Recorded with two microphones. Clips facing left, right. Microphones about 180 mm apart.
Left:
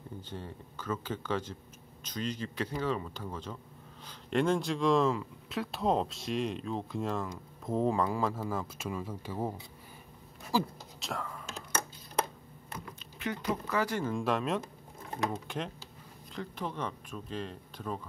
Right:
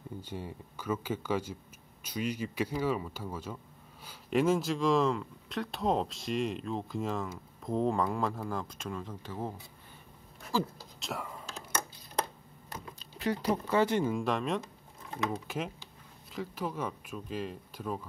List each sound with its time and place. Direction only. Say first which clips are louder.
0.2 s speech: right 2 dB; 10° right (ahead or behind); by 9.5 s 10° left (ahead or behind)
11.0 s speech: even; centre (ahead or behind)
12.7 s a sound: even; 35° right (ahead or behind)
14.0 s speech: even; centre (ahead or behind)